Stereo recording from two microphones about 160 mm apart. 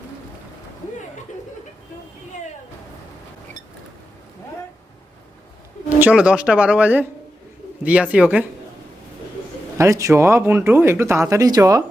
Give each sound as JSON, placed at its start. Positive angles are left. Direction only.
{"t": 6.0, "sound": "speech", "side_deg": -5}
{"t": 9.7, "sound": "speech", "side_deg": -20}